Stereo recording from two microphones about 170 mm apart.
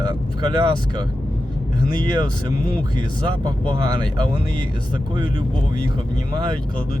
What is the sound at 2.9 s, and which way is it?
Speech, 25° right (ahead or behind).